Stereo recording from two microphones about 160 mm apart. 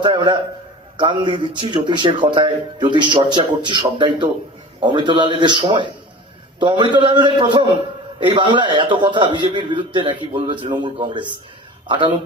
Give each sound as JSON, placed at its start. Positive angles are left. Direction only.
{"t": 0.0, "sound": "speech", "side_deg": -30}